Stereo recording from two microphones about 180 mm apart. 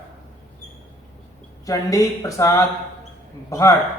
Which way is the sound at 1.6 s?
20° left (ahead or behind).